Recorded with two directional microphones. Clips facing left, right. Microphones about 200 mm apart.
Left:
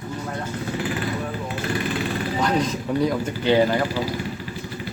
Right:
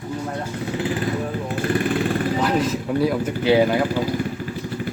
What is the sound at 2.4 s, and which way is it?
Speech, 5° right (ahead or behind).